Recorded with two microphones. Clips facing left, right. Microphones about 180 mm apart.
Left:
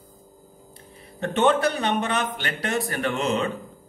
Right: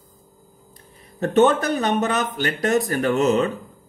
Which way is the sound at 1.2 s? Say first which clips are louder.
Right 4 dB; 40° right (ahead or behind).